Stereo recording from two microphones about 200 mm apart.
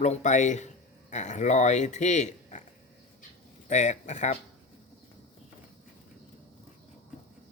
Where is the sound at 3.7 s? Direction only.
35° left (ahead or behind).